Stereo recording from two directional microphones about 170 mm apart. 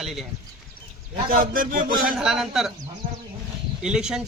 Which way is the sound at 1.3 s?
55° right (ahead or behind).